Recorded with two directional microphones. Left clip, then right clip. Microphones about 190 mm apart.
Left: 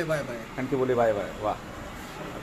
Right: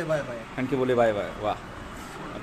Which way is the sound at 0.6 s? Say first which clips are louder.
Right 2 dB; 30° right (ahead or behind).